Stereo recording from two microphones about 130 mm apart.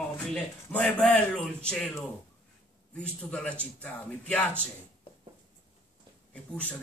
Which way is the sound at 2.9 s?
10° left (ahead or behind).